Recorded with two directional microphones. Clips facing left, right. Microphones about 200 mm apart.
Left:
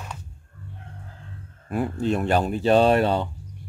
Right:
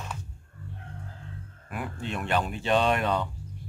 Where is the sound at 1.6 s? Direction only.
35° left (ahead or behind).